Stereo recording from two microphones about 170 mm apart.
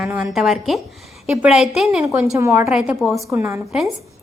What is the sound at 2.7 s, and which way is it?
Speech, 5° right (ahead or behind).